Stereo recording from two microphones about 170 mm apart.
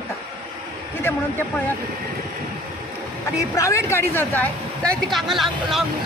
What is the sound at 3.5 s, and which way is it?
Speech, 20° left (ahead or behind).